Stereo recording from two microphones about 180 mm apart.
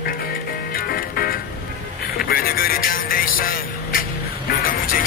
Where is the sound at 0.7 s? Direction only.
55° left (ahead or behind).